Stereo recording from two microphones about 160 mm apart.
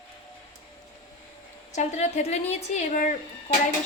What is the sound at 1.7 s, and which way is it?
A woman's voice, 45° left (ahead or behind).